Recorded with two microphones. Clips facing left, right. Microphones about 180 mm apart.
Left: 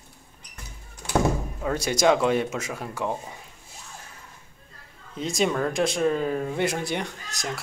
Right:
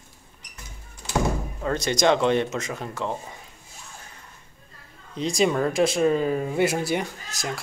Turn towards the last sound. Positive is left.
turn(degrees=-5)  # may be behind; listen again after turning